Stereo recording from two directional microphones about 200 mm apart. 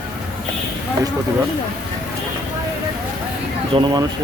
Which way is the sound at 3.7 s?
25° right (ahead or behind).